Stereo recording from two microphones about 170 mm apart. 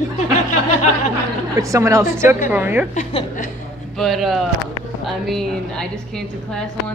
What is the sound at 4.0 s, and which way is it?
A woman's voice, centre (ahead or behind).